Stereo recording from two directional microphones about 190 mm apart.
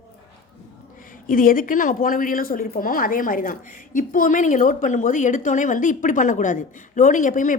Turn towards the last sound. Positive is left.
turn(degrees=45)  # may be behind; listen again after turning